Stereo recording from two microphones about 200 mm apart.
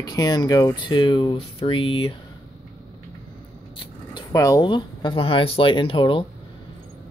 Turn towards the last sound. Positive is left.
turn(degrees=25)  # may be behind; listen again after turning